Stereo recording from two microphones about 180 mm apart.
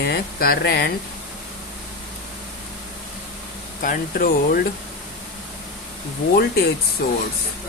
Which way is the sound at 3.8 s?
50° left (ahead or behind).